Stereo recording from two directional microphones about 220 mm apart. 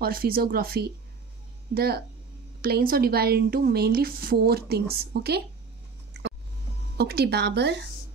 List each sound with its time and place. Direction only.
0.0 s a woman's voice: 40° right (ahead or behind)
7.0 s a woman's voice: 45° right (ahead or behind)